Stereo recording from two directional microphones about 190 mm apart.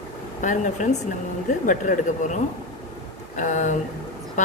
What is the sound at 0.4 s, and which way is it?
A woman's voice, 40° left (ahead or behind).